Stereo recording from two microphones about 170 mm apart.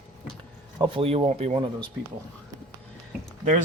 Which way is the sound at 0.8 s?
35° right (ahead or behind).